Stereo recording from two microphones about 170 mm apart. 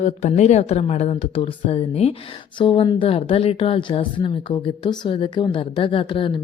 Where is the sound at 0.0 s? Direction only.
40° left (ahead or behind).